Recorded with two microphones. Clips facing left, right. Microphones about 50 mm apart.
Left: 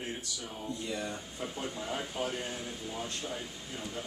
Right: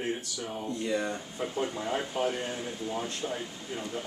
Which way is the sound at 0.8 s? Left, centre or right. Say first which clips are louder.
Right 8 dB; right.